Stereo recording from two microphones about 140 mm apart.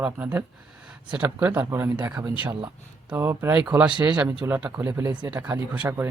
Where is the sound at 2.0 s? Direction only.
25° right (ahead or behind).